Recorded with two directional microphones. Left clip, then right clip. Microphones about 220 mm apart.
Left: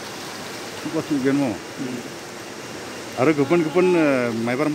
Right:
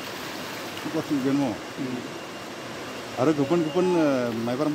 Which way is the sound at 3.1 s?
20° left (ahead or behind).